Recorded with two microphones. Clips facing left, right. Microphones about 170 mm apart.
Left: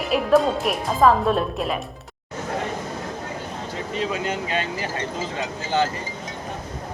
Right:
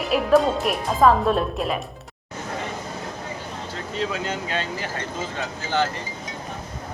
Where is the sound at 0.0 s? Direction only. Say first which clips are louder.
Even; centre (ahead or behind).